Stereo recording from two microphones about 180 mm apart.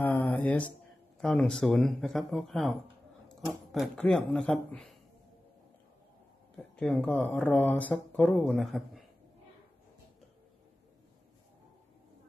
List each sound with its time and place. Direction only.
0.0 s a sound: 10° left (ahead or behind)
1.2 s speech: centre (ahead or behind)
6.5 s speech: 5° left (ahead or behind)